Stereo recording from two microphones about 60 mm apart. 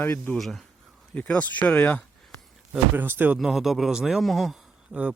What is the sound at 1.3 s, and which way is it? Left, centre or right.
Speech, centre.